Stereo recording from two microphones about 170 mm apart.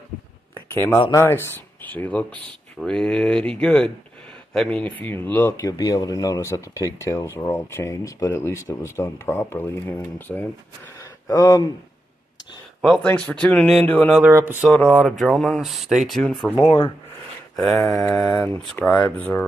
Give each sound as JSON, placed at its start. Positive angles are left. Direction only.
{"t": 1.1, "sound": "speech", "side_deg": 15}
{"t": 12.8, "sound": "speech", "side_deg": 5}
{"t": 14.2, "sound": "speech", "side_deg": -10}
{"t": 14.7, "sound": "speech", "side_deg": 5}
{"t": 16.5, "sound": "speech", "side_deg": 35}
{"t": 17.8, "sound": "speech", "side_deg": 0}